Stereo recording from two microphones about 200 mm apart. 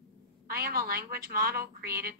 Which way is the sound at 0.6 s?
50° right (ahead or behind).